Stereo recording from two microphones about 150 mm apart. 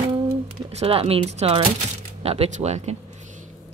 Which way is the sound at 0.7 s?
40° right (ahead or behind).